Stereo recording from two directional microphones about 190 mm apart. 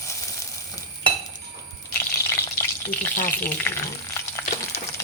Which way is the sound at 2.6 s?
10° left (ahead or behind).